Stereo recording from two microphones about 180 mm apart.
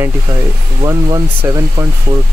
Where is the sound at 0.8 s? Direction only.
20° right (ahead or behind).